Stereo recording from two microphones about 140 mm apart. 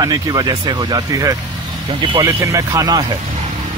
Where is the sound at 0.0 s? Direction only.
30° right (ahead or behind).